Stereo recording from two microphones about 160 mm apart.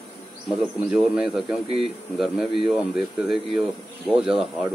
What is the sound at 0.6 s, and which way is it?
Speech, centre (ahead or behind).